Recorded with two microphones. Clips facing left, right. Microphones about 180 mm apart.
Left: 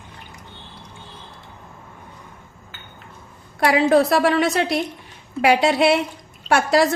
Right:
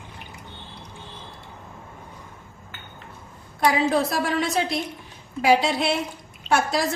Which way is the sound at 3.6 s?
70° left (ahead or behind).